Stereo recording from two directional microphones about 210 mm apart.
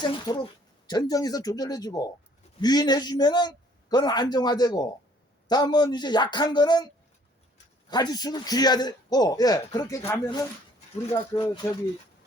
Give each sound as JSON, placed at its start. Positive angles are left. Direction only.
{"t": 0.0, "sound": "a man's voice", "side_deg": 20}
{"t": 7.9, "sound": "a man's voice", "side_deg": 20}